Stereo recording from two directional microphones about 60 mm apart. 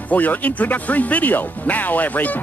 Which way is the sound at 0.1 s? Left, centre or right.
Left.